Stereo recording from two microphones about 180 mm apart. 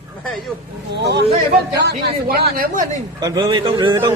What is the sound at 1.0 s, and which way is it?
Speech, 70° right (ahead or behind).